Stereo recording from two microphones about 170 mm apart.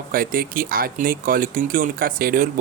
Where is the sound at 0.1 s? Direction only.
60° right (ahead or behind).